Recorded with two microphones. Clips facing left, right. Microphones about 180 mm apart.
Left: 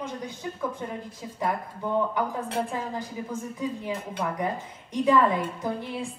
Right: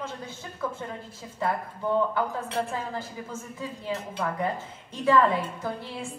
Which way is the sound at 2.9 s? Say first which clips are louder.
Left 3 dB; 15° left (ahead or behind).